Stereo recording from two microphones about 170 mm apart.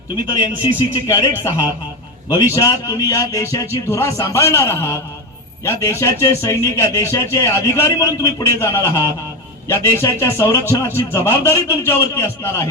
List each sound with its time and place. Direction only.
0.6 s speech: 25° left (ahead or behind)
2.6 s speech: 20° left (ahead or behind)